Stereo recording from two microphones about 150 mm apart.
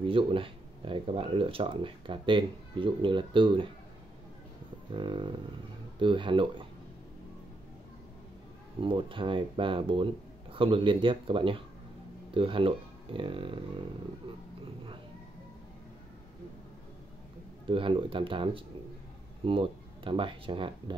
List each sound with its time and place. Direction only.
0.0 s speech: 35° right (ahead or behind)
4.9 s speech: 35° right (ahead or behind)
8.8 s speech: 35° right (ahead or behind)
17.6 s speech: 35° right (ahead or behind)